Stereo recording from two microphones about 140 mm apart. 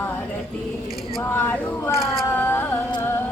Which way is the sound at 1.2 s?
15° left (ahead or behind).